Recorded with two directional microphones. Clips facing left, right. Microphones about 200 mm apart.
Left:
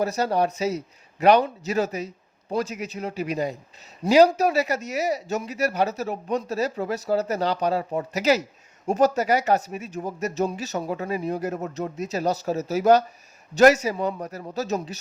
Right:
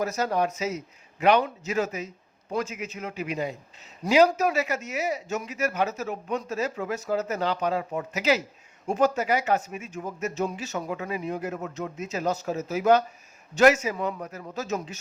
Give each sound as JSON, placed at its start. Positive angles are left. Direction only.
{"t": 0.0, "sound": "speech", "side_deg": 35}